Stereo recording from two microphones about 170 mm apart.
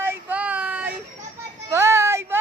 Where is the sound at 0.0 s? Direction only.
10° right (ahead or behind).